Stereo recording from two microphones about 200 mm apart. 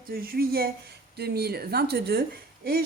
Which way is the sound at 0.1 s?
45° right (ahead or behind).